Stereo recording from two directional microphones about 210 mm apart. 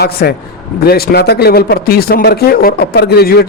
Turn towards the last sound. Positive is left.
turn(degrees=50)  # may be behind; listen again after turning